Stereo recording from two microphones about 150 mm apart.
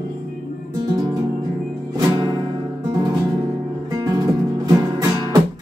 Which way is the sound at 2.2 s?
30° right (ahead or behind).